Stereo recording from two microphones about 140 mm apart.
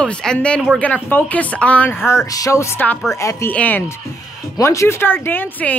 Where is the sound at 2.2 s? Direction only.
25° left (ahead or behind).